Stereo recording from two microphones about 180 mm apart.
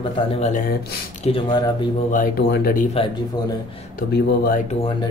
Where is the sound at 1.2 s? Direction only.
30° left (ahead or behind).